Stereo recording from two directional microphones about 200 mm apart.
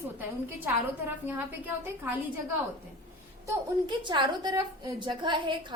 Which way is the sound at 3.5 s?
25° right (ahead or behind).